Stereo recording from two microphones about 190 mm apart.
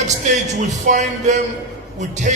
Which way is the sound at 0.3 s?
40° right (ahead or behind).